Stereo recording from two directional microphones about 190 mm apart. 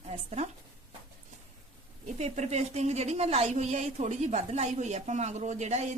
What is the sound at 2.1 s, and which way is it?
Speech, 35° right (ahead or behind).